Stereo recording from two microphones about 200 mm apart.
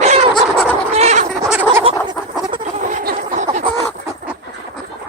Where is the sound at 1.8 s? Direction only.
20° right (ahead or behind).